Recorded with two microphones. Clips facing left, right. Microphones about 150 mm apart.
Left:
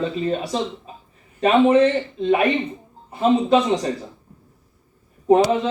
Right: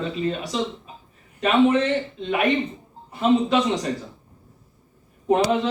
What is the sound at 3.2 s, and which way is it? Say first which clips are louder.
Speech: left 2 dB; 30° left (ahead or behind).